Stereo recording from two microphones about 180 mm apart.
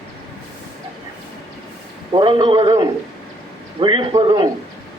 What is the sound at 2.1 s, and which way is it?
A man's voice, 25° right (ahead or behind).